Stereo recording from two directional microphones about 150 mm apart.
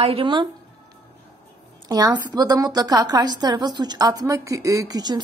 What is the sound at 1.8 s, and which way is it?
A woman's voice, 25° right (ahead or behind).